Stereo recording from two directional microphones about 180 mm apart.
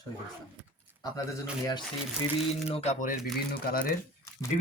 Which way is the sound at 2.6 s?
40° left (ahead or behind).